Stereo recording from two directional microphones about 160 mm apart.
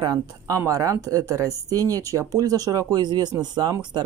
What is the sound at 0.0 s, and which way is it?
Speech, 20° right (ahead or behind).